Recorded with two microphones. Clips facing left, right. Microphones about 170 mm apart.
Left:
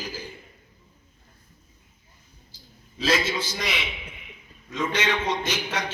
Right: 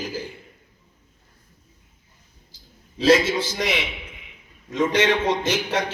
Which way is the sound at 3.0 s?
55° right (ahead or behind).